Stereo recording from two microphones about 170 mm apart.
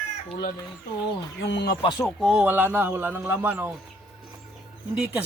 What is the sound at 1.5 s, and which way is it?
Speech, 80° left.